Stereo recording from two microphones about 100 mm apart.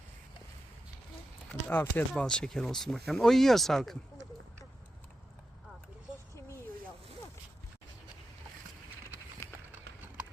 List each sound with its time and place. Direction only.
1.5 s speech: 15° left (ahead or behind)
2.2 s speech: 5° left (ahead or behind)
9.4 s horse: 30° left (ahead or behind)